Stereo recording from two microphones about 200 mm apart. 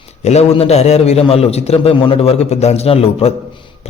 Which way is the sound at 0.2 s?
35° left (ahead or behind).